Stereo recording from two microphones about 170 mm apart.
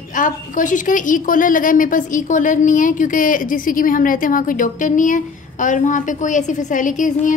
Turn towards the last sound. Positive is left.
turn(degrees=50)  # may be behind; listen again after turning